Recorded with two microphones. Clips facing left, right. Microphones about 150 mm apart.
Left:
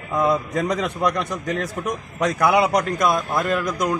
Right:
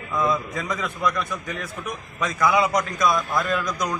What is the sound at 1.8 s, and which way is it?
A man's voice, 65° left (ahead or behind).